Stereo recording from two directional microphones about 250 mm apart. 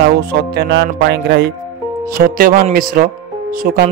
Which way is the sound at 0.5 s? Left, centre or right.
Right.